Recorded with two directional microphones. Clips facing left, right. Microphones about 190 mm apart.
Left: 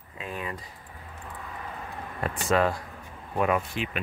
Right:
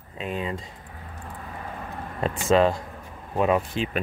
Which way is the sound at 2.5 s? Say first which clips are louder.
Right 5 dB; 25° right (ahead or behind).